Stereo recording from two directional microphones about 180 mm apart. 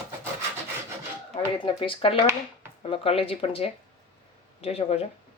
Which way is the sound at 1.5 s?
30° left (ahead or behind).